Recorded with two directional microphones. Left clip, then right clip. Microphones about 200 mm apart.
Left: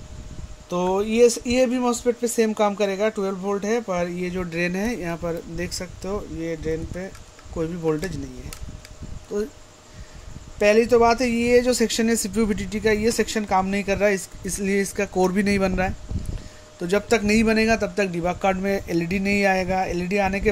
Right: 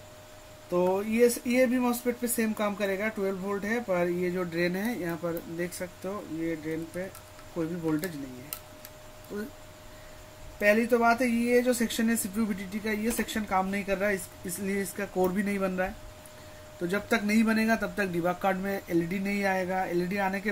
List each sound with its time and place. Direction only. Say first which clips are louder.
0.7 s speech: left 4 dB; 45° left (ahead or behind)
9.3 s speech: left 11 dB; 30° left (ahead or behind)
10.6 s speech: left 7 dB; 40° left (ahead or behind)